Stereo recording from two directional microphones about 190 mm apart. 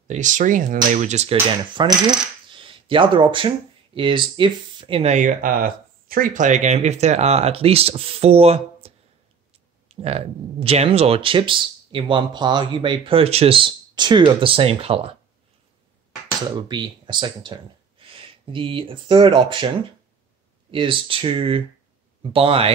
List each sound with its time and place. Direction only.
0.1 s speech: 40° right (ahead or behind)
1.8 s speech: 25° right (ahead or behind)
16.5 s speech: 25° right (ahead or behind)
20.7 s speech: 25° right (ahead or behind)